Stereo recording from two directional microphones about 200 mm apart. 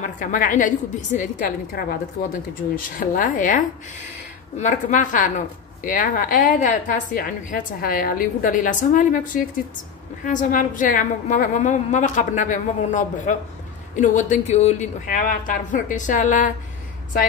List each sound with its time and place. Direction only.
0.0 s a woman's voice: 40° left (ahead or behind)
2.7 s a woman's voice: 45° left (ahead or behind)